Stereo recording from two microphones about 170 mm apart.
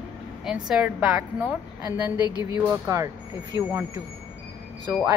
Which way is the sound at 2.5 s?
15° right (ahead or behind).